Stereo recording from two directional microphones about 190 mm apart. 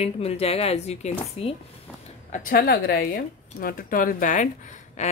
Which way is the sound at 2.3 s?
50° left (ahead or behind).